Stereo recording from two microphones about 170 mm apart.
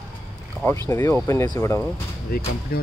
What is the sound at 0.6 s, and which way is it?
Speech, 15° left (ahead or behind).